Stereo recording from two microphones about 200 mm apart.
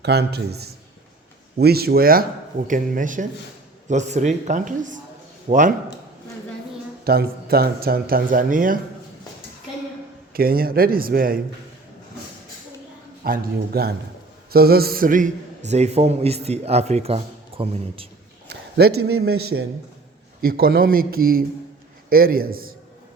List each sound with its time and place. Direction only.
0.0 s a man's voice: 55° right (ahead or behind); by 5.7 s 40° right (ahead or behind)
7.0 s speech: 50° right (ahead or behind)
10.3 s speech: 50° right (ahead or behind)
13.2 s a man's voice: 50° right (ahead or behind); by 18.1 s 30° right (ahead or behind)
18.4 s a sound: 55° right (ahead or behind)
19.5 s a man's voice: 55° right (ahead or behind)